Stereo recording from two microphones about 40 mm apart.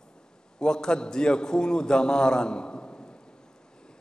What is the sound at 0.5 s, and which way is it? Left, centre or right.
A man's voice, centre.